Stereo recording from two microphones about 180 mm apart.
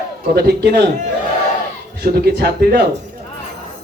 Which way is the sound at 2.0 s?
60° right (ahead or behind).